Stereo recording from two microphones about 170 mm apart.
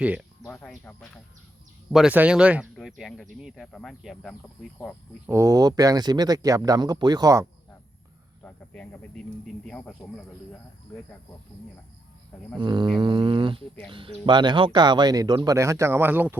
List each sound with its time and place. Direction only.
0.0 s speech: 10° right (ahead or behind)
0.4 s speech: 5° left (ahead or behind)
1.9 s speech: 5° right (ahead or behind)
5.2 s speech: 15° right (ahead or behind)
8.4 s speech: 5° left (ahead or behind)
12.3 s speech: 5° left (ahead or behind)
12.5 s speech: 25° right (ahead or behind); by 16.4 s 10° right (ahead or behind)